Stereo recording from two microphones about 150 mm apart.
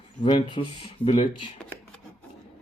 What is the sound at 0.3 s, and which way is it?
Speech, 35° left (ahead or behind).